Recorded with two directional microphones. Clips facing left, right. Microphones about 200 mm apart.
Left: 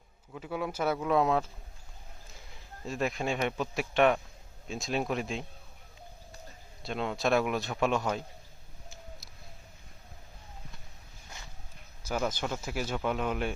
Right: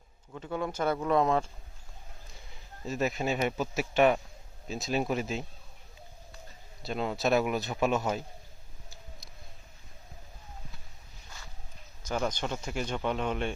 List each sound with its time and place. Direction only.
0.3 s speech: 5° left (ahead or behind)
2.8 s speech: centre (ahead or behind)
6.8 s speech: centre (ahead or behind)
12.0 s speech: 5° left (ahead or behind)